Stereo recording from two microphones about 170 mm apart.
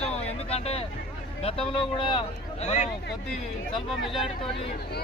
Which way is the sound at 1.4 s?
35° left (ahead or behind).